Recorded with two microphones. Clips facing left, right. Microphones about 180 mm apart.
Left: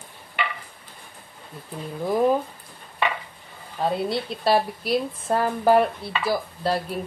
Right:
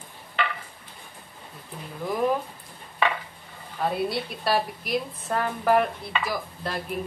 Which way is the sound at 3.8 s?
30° left (ahead or behind).